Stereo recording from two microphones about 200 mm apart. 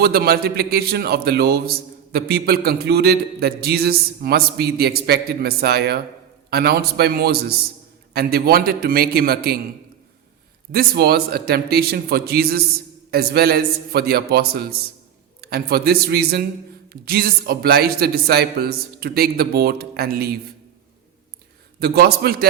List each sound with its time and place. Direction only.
0.0 s a man's voice: 50° right (ahead or behind)
10.7 s a man's voice: 50° right (ahead or behind)
21.8 s a man's voice: 50° right (ahead or behind)